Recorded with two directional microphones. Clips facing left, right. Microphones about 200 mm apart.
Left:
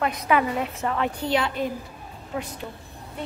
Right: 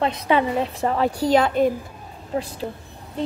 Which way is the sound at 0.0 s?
25° right (ahead or behind).